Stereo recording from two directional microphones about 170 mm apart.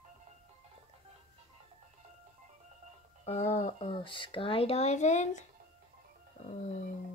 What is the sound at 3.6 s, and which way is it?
Speech, 35° left (ahead or behind).